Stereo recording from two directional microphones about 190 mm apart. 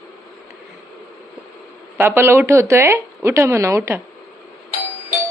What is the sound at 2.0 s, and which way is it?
A woman's voice, 10° right (ahead or behind).